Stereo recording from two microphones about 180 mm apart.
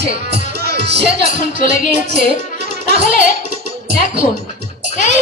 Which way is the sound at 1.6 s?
45° left (ahead or behind).